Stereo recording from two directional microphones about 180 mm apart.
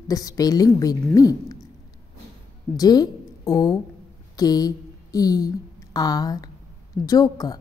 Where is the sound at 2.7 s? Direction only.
20° left (ahead or behind).